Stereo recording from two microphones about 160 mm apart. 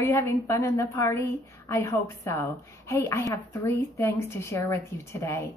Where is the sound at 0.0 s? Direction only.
15° left (ahead or behind).